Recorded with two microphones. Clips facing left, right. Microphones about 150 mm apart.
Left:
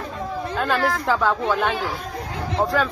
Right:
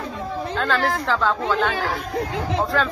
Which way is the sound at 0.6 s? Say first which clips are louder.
Even; 15° left (ahead or behind).